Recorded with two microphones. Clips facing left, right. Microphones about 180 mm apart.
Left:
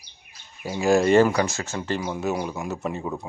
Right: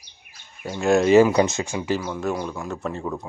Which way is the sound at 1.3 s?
20° right (ahead or behind).